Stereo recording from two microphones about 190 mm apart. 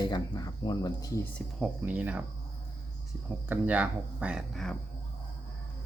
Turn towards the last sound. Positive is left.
turn(degrees=0)  # may be behind; listen again after turning